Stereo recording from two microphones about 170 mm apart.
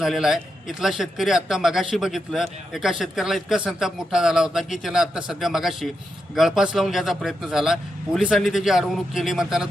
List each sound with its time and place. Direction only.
0.0 s a man's voice: centre (ahead or behind)